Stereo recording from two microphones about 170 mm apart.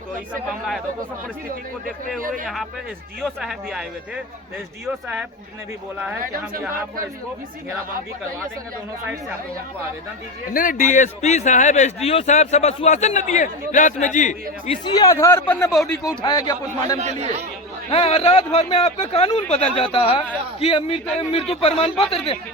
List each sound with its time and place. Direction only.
3.2 s a man's voice: centre (ahead or behind)
10.5 s speech: 55° left (ahead or behind)
15.0 s speech: 15° left (ahead or behind)
15.7 s a man's voice: centre (ahead or behind)
16.0 s speech: 25° left (ahead or behind)
17.0 s speech: 40° right (ahead or behind)
17.9 s speech: 35° left (ahead or behind)